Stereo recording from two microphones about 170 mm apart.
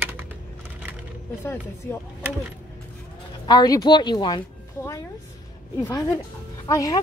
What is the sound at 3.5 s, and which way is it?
Speech, 25° left (ahead or behind).